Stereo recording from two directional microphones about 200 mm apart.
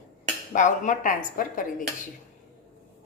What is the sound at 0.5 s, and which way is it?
A woman's voice, 40° left (ahead or behind).